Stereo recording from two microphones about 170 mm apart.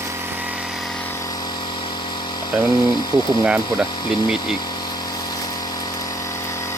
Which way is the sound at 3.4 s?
5° right (ahead or behind).